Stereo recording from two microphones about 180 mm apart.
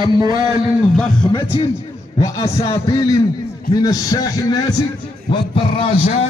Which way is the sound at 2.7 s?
15° left (ahead or behind).